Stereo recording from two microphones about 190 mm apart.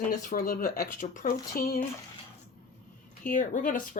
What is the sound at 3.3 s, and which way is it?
Speech, 45° left (ahead or behind).